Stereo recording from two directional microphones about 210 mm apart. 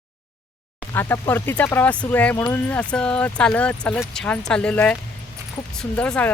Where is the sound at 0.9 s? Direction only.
10° left (ahead or behind).